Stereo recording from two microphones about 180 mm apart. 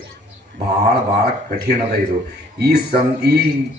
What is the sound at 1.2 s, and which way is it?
Speech, 55° right (ahead or behind).